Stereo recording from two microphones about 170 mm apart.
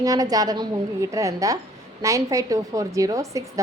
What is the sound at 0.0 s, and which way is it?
A woman's voice, 20° right (ahead or behind).